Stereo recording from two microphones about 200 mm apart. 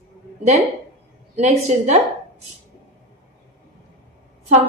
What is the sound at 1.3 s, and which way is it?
Speech, 35° right (ahead or behind).